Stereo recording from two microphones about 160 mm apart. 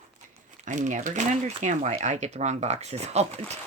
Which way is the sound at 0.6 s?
50° right (ahead or behind).